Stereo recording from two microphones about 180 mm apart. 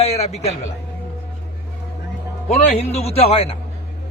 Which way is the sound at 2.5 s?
35° left (ahead or behind).